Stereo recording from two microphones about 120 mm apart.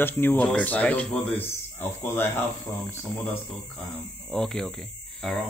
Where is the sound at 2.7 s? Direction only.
30° left (ahead or behind).